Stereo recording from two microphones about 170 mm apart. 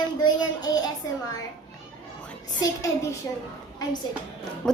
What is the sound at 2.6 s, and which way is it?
Speech, 20° left (ahead or behind).